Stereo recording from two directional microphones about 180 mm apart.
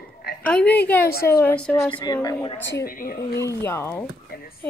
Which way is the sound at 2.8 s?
50° left (ahead or behind).